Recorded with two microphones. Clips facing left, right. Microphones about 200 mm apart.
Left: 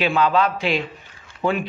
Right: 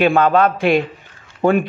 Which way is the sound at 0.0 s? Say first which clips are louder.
Right 5 dB; 50° right (ahead or behind).